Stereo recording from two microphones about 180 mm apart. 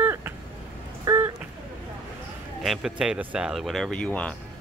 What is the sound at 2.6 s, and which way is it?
Speech, centre (ahead or behind).